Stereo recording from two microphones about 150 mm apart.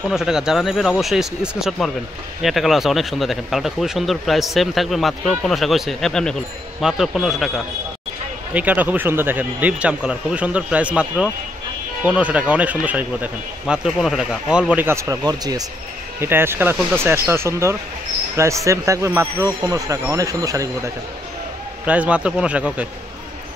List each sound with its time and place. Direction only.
0.1 s speech: 5° right (ahead or behind); by 15.6 s 25° right (ahead or behind)
16.2 s speech: 15° right (ahead or behind)
21.8 s speech: 10° right (ahead or behind)